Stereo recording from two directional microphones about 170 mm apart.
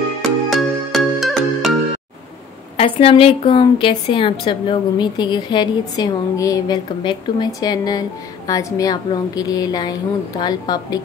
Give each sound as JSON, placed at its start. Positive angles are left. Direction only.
{"t": 0.5, "sound": "music", "side_deg": 0}
{"t": 2.8, "sound": "a woman's voice", "side_deg": 35}